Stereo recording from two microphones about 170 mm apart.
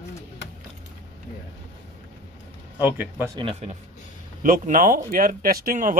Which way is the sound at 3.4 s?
35° right (ahead or behind).